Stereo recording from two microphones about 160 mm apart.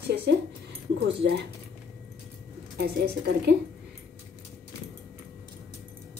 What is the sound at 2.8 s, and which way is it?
Speech, 90° right.